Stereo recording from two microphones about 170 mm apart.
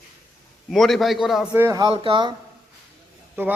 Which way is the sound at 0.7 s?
Centre (ahead or behind).